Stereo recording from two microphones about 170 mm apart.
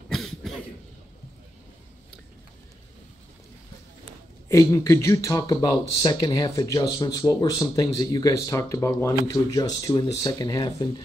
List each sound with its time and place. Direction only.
0.1 s cough: centre (ahead or behind)
4.5 s speech: 15° left (ahead or behind)